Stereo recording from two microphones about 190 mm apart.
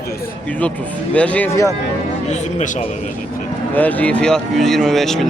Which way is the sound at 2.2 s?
35° left (ahead or behind).